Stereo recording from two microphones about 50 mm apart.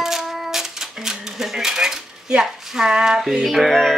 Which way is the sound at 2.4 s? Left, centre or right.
Centre.